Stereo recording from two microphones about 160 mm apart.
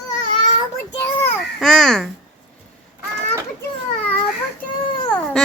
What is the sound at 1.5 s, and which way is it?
Babbling, 5° left (ahead or behind).